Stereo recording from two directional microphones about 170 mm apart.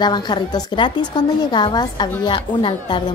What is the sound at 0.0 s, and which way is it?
A woman's voice, 25° left (ahead or behind).